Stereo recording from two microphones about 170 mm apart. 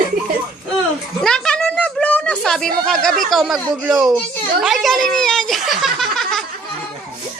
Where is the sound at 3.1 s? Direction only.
Centre (ahead or behind).